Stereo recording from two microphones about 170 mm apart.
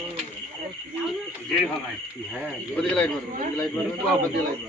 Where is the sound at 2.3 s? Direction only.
Centre (ahead or behind).